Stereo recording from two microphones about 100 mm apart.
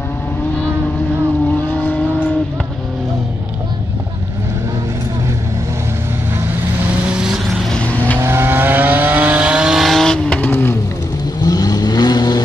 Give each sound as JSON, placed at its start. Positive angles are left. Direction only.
{"t": 1.7, "sound": "vehicle", "side_deg": 20}
{"t": 6.4, "sound": "vehicle", "side_deg": -20}
{"t": 7.1, "sound": "vehicle", "side_deg": -10}
{"t": 7.7, "sound": "vehicle", "side_deg": 15}
{"t": 8.2, "sound": "vehicle", "side_deg": -25}
{"t": 11.4, "sound": "vehicle", "side_deg": 40}